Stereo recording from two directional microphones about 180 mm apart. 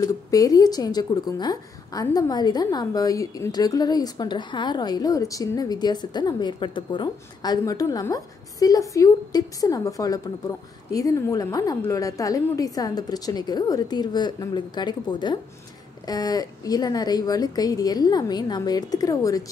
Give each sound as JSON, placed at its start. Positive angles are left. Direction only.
{"t": 0.0, "sound": "a woman's voice", "side_deg": 20}